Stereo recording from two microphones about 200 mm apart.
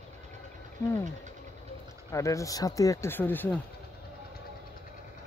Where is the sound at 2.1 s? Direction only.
15° left (ahead or behind).